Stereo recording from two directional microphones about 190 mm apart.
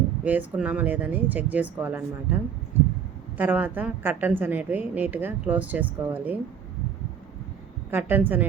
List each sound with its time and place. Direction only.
0.3 s a woman's voice: 10° right (ahead or behind)
7.9 s a woman's voice: 10° right (ahead or behind)